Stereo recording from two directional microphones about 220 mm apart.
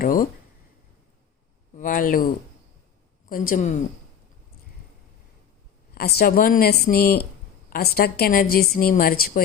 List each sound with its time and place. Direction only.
0.0 s speech: 40° left (ahead or behind)
1.7 s speech: 40° left (ahead or behind)
5.9 s a woman's voice: 45° left (ahead or behind)